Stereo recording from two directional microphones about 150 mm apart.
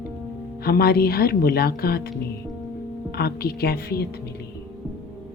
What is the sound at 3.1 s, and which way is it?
Speech, 90° left.